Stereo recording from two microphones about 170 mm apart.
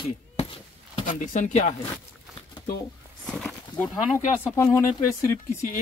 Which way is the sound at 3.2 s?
5° left (ahead or behind).